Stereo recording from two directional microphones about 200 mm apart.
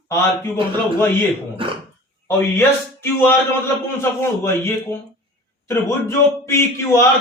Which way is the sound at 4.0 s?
15° left (ahead or behind).